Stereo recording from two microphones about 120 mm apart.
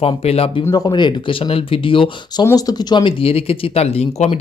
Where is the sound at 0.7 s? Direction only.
35° left (ahead or behind).